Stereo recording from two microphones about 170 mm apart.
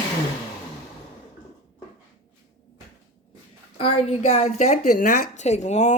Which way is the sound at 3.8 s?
35° left (ahead or behind).